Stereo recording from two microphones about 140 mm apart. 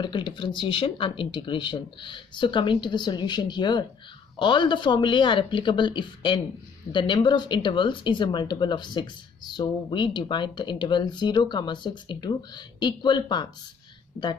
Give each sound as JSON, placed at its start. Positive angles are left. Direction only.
{"t": 0.0, "sound": "speech", "side_deg": 35}
{"t": 14.2, "sound": "speech", "side_deg": 15}